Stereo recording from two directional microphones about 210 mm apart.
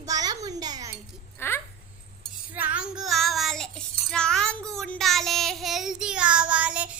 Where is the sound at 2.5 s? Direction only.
5° right (ahead or behind).